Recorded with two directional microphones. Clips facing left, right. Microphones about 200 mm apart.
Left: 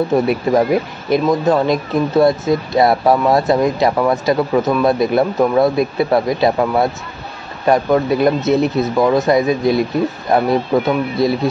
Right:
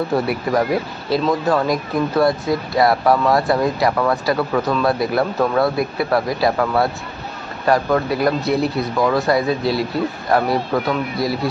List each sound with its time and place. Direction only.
0.1 s speech: 25° left (ahead or behind)